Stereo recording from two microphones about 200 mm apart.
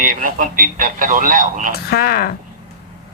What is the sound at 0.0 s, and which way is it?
Speech, 40° right (ahead or behind).